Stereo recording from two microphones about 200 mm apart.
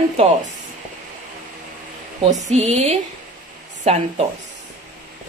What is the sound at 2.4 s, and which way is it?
A woman's voice, 35° right (ahead or behind).